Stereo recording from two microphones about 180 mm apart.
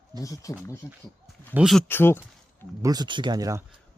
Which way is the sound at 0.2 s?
20° left (ahead or behind).